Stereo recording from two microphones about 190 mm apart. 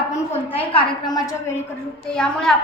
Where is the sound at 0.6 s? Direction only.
25° left (ahead or behind).